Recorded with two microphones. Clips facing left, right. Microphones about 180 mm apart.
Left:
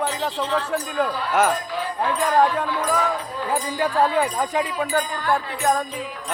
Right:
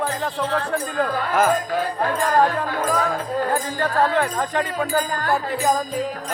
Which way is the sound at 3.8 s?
10° left (ahead or behind).